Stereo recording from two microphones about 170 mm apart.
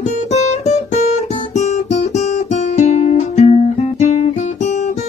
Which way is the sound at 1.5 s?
40° left (ahead or behind).